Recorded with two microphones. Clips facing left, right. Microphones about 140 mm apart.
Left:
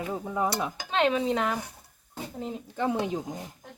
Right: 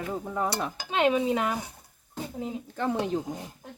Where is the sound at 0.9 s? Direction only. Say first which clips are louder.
Right 1 dB; 10° right (ahead or behind).